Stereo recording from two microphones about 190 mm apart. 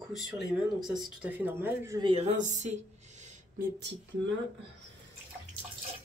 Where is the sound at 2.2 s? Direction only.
40° right (ahead or behind).